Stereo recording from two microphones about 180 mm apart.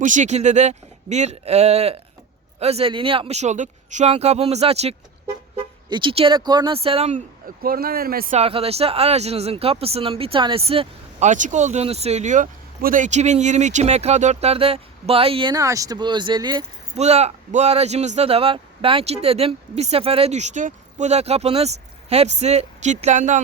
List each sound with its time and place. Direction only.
0.0 s speech: 45° right (ahead or behind)
7.6 s speech: 55° right (ahead or behind)
8.4 s speech: 35° right (ahead or behind)
17.0 s speech: 35° right (ahead or behind)